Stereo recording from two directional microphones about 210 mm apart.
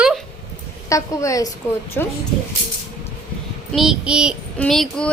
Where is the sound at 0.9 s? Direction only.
15° left (ahead or behind).